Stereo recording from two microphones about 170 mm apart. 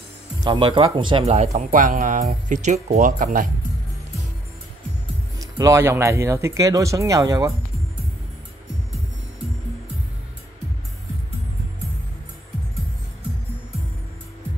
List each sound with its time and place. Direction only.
0.4 s speech: 30° right (ahead or behind); by 3.4 s 50° right (ahead or behind)
5.4 s speech: 20° right (ahead or behind)